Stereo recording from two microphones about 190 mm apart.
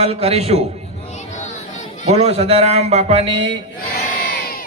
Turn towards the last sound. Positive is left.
turn(degrees=50)  # may be behind; listen again after turning